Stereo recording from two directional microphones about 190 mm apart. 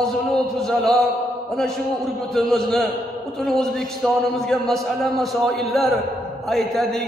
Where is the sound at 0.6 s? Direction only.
Centre (ahead or behind).